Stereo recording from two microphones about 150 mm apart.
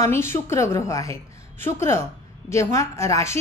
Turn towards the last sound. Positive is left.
turn(degrees=20)  # may be behind; listen again after turning